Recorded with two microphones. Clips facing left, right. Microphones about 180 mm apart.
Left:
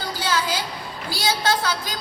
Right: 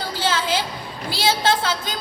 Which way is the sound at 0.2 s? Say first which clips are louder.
Right 2 dB; 25° right (ahead or behind).